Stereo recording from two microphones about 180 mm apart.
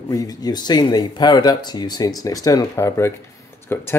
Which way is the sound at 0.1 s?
20° left (ahead or behind).